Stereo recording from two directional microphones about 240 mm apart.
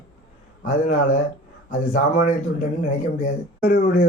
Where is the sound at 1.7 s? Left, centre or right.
Left.